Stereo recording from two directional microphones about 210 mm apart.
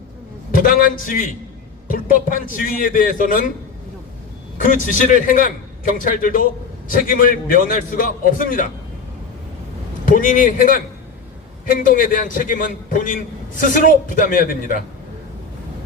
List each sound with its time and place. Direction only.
0.6 s a man's voice: 40° left (ahead or behind)
4.5 s a man's voice: 40° left (ahead or behind)
10.1 s a man's voice: 40° left (ahead or behind)